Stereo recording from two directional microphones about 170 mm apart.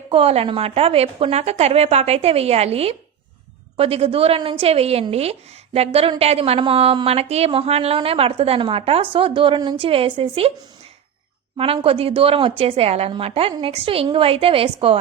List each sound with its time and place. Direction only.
0.1 s a woman's voice: 35° right (ahead or behind)
11.5 s a woman's voice: 35° right (ahead or behind)